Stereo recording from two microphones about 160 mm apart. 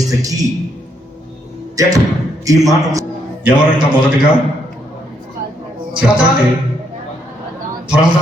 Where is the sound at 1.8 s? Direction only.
20° right (ahead or behind).